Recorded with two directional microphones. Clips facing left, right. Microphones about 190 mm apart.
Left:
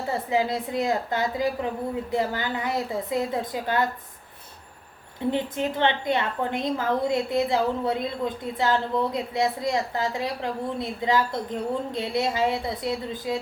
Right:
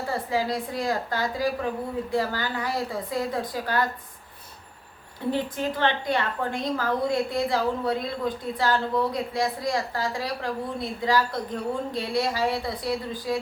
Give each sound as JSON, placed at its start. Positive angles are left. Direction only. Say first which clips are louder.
{"t": 0.1, "sound": "a woman's voice", "louder": "left 2 dB", "side_deg": 20}
{"t": 5.3, "sound": "a woman's voice", "louder": "even", "side_deg": 20}